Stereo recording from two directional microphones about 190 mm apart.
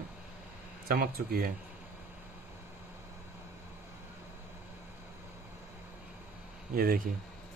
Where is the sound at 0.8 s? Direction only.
50° right (ahead or behind).